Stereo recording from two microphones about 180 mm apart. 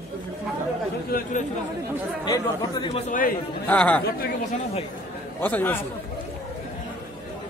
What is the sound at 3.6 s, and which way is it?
Speech, 5° left (ahead or behind).